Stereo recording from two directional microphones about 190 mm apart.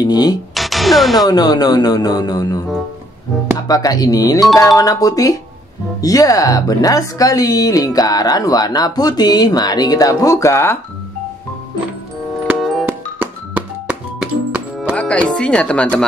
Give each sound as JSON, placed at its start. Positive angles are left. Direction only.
{"t": 0.0, "sound": "speech", "side_deg": 20}
{"t": 0.6, "sound": "music", "side_deg": 0}
{"t": 1.2, "sound": "speech", "side_deg": 20}
{"t": 3.6, "sound": "speech", "side_deg": 20}
{"t": 12.5, "sound": "music", "side_deg": 0}
{"t": 15.0, "sound": "speech", "side_deg": 5}